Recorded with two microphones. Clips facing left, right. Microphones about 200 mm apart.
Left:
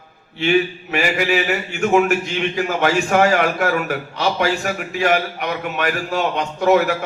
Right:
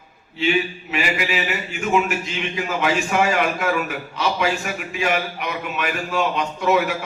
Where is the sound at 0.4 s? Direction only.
55° left (ahead or behind).